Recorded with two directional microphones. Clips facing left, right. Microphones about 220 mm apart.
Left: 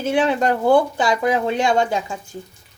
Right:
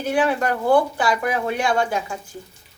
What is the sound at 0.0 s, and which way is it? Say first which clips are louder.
Speech: left 2 dB; 25° left (ahead or behind).